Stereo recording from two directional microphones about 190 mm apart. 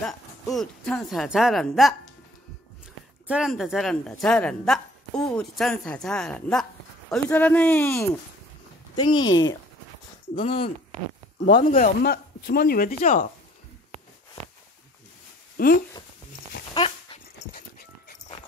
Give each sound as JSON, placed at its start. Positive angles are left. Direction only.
{"t": 0.0, "sound": "a woman's voice", "side_deg": 0}
{"t": 3.3, "sound": "a woman's voice", "side_deg": -5}
{"t": 8.9, "sound": "speech", "side_deg": 25}
{"t": 11.7, "sound": "speech", "side_deg": 40}
{"t": 12.1, "sound": "speech", "side_deg": 55}
{"t": 15.5, "sound": "a sound", "side_deg": 55}
{"t": 16.7, "sound": "dog", "side_deg": 30}